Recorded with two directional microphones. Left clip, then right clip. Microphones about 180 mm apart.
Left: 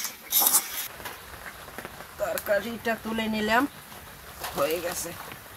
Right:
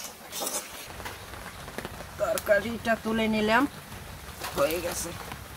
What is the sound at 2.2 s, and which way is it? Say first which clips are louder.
Speech: right 2 dB; 15° left (ahead or behind).